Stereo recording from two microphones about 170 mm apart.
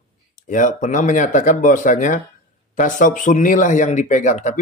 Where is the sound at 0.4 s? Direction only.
50° left (ahead or behind).